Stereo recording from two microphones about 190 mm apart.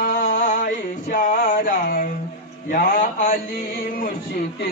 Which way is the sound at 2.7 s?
45° left (ahead or behind).